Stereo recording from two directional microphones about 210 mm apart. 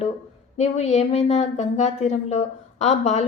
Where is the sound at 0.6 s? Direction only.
30° left (ahead or behind).